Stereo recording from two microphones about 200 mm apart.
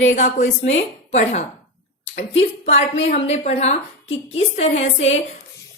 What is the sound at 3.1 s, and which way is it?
A woman's voice, 35° left (ahead or behind).